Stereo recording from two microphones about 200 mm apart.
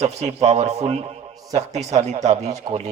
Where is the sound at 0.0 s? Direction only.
35° right (ahead or behind).